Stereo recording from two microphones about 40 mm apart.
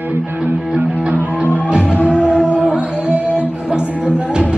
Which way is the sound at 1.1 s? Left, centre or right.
Right.